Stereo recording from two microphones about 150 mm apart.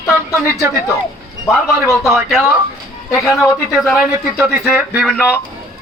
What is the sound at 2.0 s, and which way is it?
A man's voice, centre (ahead or behind).